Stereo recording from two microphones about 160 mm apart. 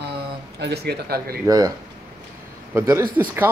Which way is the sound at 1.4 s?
20° right (ahead or behind).